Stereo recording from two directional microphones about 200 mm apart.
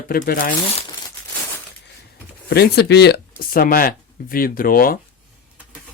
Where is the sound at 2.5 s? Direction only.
55° left (ahead or behind).